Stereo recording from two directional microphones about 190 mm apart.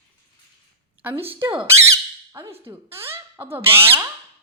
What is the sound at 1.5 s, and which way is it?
Squawk, 20° right (ahead or behind).